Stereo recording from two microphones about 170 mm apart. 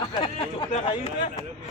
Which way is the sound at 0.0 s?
25° left (ahead or behind).